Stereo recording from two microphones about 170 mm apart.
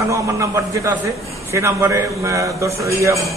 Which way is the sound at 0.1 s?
15° right (ahead or behind).